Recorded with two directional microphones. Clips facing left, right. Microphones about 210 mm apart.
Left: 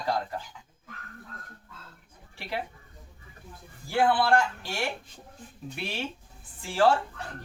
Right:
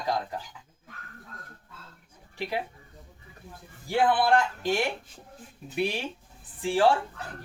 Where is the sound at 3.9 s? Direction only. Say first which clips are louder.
Right 1 dB; 20° right (ahead or behind).